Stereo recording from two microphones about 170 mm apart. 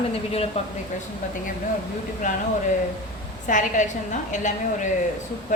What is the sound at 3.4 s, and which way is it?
A woman's voice, 50° left (ahead or behind).